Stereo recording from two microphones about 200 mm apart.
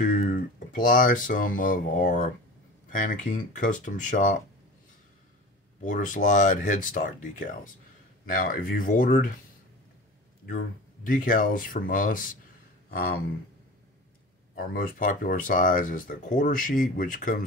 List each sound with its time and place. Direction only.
0.0 s speech: 45° left (ahead or behind)
5.8 s speech: 40° left (ahead or behind)
11.1 s speech: 45° left (ahead or behind)
14.6 s speech: 45° left (ahead or behind)